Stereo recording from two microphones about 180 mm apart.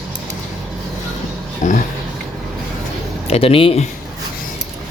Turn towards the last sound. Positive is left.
turn(degrees=30)  # may be behind; listen again after turning